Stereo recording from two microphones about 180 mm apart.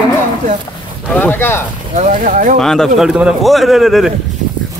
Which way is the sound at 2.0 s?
45° right (ahead or behind).